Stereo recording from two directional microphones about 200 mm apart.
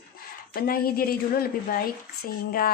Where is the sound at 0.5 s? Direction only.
50° left (ahead or behind).